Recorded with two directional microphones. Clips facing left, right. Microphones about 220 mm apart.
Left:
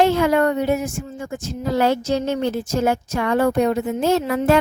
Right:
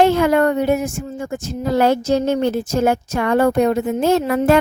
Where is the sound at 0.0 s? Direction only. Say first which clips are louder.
Right 2 dB; 55° right (ahead or behind).